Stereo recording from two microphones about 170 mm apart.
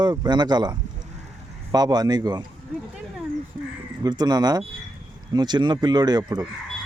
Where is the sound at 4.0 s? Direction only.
25° right (ahead or behind).